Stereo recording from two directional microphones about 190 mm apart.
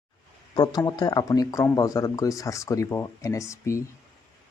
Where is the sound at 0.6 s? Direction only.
20° left (ahead or behind).